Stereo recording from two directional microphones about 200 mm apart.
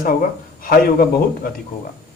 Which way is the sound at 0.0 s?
45° left (ahead or behind).